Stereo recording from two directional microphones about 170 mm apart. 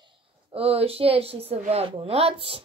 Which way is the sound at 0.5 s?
35° right (ahead or behind).